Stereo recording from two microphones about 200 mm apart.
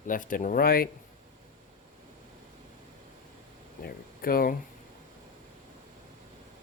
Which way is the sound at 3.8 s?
45° left (ahead or behind).